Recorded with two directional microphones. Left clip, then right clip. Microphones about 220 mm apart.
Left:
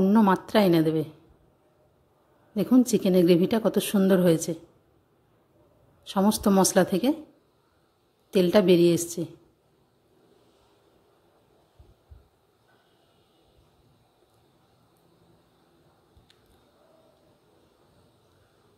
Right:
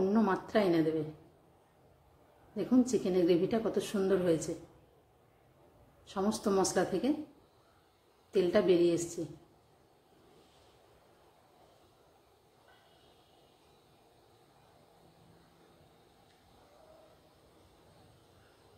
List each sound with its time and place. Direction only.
0.0 s speech: 45° left (ahead or behind)
2.5 s a woman's voice: 45° left (ahead or behind)
6.0 s a woman's voice: 45° left (ahead or behind)
8.3 s a woman's voice: 45° left (ahead or behind)